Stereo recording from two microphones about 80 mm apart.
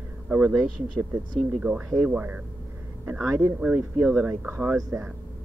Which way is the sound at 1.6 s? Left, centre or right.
Centre.